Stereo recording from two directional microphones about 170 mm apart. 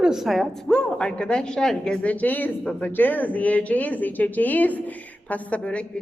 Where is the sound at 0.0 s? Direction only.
Centre (ahead or behind).